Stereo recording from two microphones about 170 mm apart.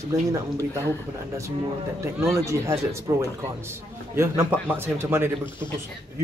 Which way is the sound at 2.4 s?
15° right (ahead or behind).